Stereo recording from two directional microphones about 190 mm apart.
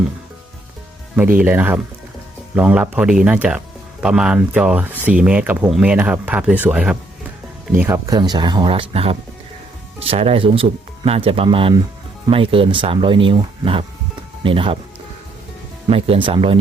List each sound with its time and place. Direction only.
1.1 s speech: 10° right (ahead or behind); by 14.8 s 25° right (ahead or behind)
15.9 s speech: 30° right (ahead or behind)